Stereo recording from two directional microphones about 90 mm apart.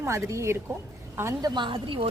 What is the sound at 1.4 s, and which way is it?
Speech, 60° right (ahead or behind).